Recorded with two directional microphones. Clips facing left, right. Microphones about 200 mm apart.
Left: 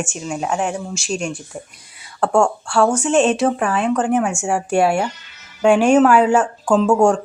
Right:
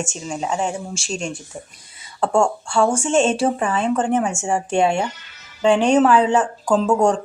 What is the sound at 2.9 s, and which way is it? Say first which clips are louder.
Speech: left 2 dB; 25° right (ahead or behind).